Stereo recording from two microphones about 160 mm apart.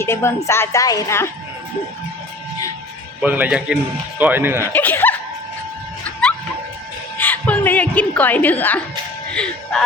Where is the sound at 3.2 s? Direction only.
10° right (ahead or behind).